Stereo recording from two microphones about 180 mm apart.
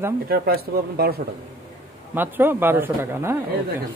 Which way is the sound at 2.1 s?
10° right (ahead or behind).